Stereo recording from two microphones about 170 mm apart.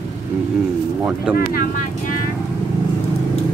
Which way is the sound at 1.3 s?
60° left (ahead or behind).